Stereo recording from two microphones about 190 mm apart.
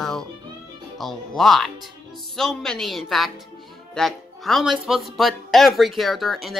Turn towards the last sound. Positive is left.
turn(degrees=0)  # may be behind; listen again after turning